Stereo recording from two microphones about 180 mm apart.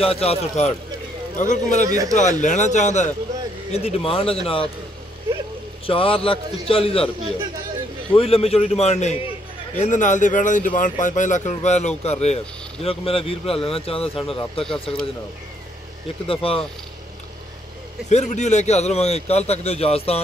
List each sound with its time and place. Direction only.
0.0 s a man's voice: 35° left (ahead or behind)
1.9 s a man's voice: 20° right (ahead or behind)
2.1 s a man's voice: 40° left (ahead or behind)
5.9 s a man's voice: 30° left (ahead or behind)
8.1 s a man's voice: 35° left (ahead or behind)
16.4 s a man's voice: 30° left (ahead or behind)
18.1 s a man's voice: 40° left (ahead or behind)